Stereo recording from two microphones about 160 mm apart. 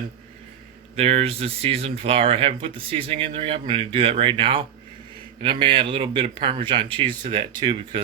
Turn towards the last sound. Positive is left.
turn(degrees=-30)  # may be behind; listen again after turning